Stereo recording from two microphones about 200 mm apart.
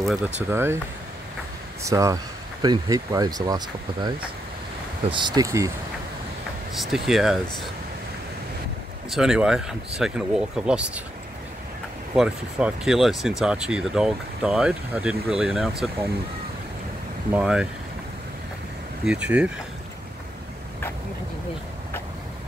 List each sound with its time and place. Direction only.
0.0 s speech: 5° right (ahead or behind)
1.8 s speech: 15° right (ahead or behind)
6.8 s speech: centre (ahead or behind)
9.1 s speech: 5° right (ahead or behind)
12.2 s speech: 5° right (ahead or behind)
17.3 s speech: 5° right (ahead or behind)
19.0 s speech: 5° right (ahead or behind)